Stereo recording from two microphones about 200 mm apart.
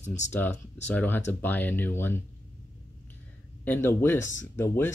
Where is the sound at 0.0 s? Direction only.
35° left (ahead or behind).